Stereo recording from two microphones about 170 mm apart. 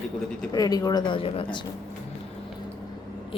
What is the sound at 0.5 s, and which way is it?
Speech, 20° left (ahead or behind).